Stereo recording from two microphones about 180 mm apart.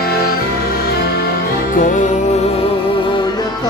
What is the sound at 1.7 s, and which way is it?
Music, 45° left (ahead or behind).